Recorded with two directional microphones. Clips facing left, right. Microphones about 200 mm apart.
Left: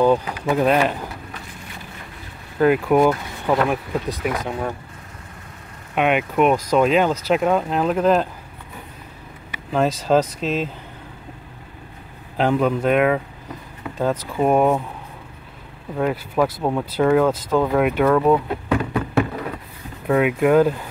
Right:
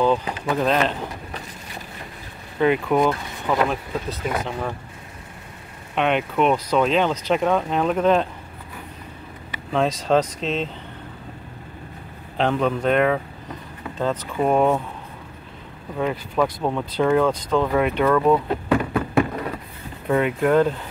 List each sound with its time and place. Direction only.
0.0 s speech: 15° left (ahead or behind)
2.6 s speech: 5° left (ahead or behind)
5.9 s speech: 10° left (ahead or behind)
9.7 s speech: 5° left (ahead or behind)
12.4 s speech: 5° left (ahead or behind)
16.0 s speech: 5° left (ahead or behind)
18.7 s a sound: centre (ahead or behind)
20.1 s speech: 5° left (ahead or behind)